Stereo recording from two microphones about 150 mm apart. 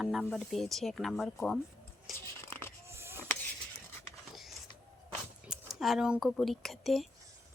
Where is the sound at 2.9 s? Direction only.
15° right (ahead or behind).